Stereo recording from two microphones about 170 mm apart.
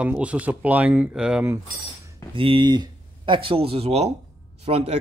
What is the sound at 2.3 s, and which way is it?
Speech, 30° right (ahead or behind).